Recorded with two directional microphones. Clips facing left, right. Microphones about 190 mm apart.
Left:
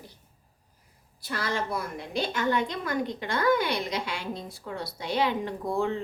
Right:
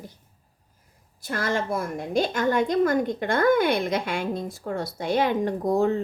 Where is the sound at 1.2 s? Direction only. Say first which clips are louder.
Right 4 dB; 45° right (ahead or behind).